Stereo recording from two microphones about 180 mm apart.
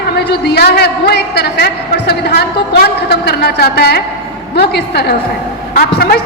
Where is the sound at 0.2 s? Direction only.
65° left (ahead or behind).